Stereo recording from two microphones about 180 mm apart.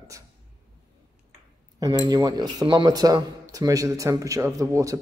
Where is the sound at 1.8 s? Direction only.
20° right (ahead or behind).